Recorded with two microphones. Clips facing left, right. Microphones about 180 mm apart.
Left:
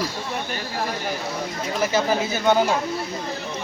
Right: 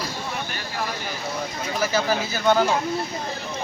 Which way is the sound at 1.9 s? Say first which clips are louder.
Left 3 dB; 25° left (ahead or behind).